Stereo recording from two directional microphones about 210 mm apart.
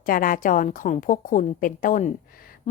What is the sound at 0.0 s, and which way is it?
A woman's voice, 40° left (ahead or behind).